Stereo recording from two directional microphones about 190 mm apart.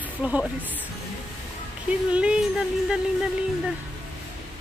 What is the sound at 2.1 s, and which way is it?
Music, 5° right (ahead or behind).